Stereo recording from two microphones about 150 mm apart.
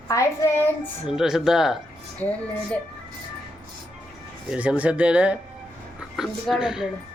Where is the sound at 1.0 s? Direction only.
5° right (ahead or behind).